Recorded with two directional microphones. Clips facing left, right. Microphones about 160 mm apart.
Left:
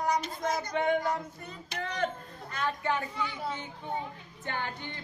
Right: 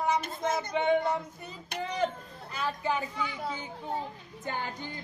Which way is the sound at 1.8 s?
10° right (ahead or behind).